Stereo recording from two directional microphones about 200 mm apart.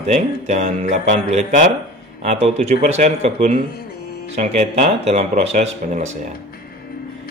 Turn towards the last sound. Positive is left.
turn(degrees=-35)  # may be behind; listen again after turning